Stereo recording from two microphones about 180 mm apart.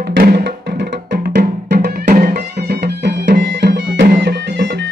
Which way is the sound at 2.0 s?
50° right (ahead or behind).